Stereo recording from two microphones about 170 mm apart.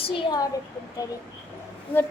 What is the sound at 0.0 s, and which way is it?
Speech, 25° left (ahead or behind).